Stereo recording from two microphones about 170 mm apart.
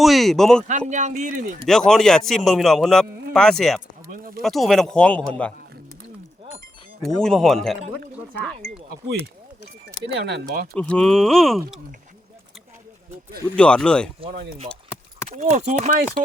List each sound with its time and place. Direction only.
0.0 s a man's voice: centre (ahead or behind)
0.7 s speech: 45° right (ahead or behind)
1.6 s a man's voice: 5° left (ahead or behind)
7.0 s a man's voice: 5° left (ahead or behind)
10.0 s speech: 80° right
10.8 s a man's voice: 5° left (ahead or behind)
13.6 s a man's voice: 5° left (ahead or behind)
15.4 s speech: 40° right (ahead or behind)